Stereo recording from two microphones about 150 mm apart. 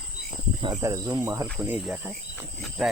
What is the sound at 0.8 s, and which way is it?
Speech, 20° right (ahead or behind).